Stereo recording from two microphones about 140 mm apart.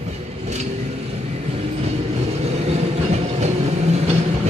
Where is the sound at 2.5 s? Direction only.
50° right (ahead or behind).